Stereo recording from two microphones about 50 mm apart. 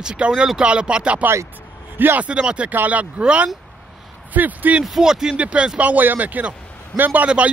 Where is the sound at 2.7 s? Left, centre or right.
Right.